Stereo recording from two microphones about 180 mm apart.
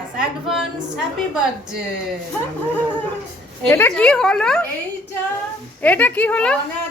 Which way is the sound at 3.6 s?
10° left (ahead or behind).